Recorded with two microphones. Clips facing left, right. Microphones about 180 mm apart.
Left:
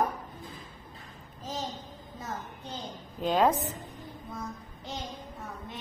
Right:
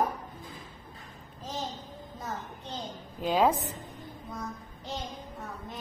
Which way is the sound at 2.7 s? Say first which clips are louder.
Right 2 dB; centre (ahead or behind).